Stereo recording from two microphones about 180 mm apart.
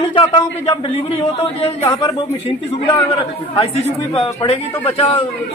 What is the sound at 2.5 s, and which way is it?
Speech, 30° left (ahead or behind).